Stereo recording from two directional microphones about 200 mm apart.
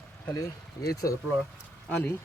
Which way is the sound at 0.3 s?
15° left (ahead or behind).